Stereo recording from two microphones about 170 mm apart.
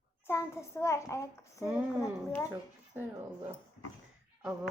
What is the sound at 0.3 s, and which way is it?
A child's voice, 15° left (ahead or behind).